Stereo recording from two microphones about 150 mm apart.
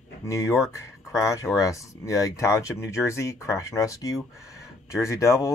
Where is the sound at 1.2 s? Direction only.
20° left (ahead or behind).